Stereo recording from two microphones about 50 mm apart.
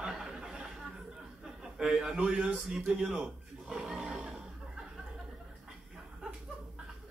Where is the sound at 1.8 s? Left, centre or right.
Centre.